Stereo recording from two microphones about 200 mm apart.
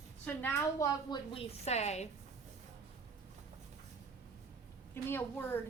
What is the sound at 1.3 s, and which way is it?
Speech, 35° left (ahead or behind).